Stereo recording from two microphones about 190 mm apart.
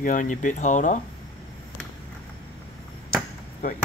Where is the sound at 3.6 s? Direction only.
40° left (ahead or behind).